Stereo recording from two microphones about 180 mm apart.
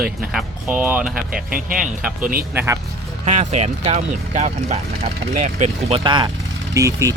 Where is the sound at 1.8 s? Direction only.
5° right (ahead or behind).